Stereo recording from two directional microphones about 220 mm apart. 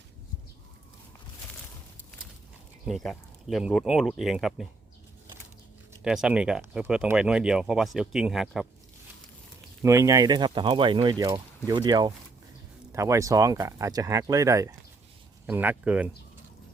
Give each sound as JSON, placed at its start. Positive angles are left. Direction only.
{"t": 2.8, "sound": "speech", "side_deg": 0}
{"t": 6.0, "sound": "speech", "side_deg": -5}
{"t": 9.8, "sound": "speech", "side_deg": -15}